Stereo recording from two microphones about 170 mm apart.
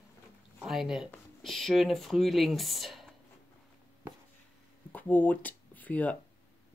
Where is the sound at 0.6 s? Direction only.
Centre (ahead or behind).